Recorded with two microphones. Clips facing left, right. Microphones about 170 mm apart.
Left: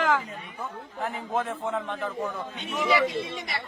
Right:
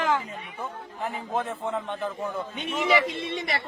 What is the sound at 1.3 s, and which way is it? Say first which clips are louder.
Speech: even; centre (ahead or behind).